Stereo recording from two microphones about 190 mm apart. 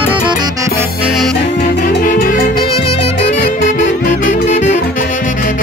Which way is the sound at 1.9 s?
45° left (ahead or behind).